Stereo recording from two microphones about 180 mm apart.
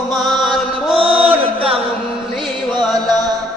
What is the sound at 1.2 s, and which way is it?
Chant, 30° right (ahead or behind).